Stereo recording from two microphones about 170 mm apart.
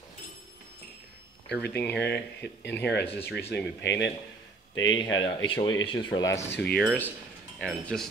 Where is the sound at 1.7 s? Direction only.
15° left (ahead or behind).